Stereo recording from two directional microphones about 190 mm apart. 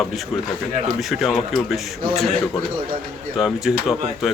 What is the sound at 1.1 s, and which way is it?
Speech, centre (ahead or behind).